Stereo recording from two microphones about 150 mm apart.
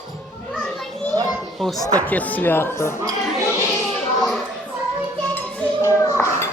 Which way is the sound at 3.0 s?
20° right (ahead or behind).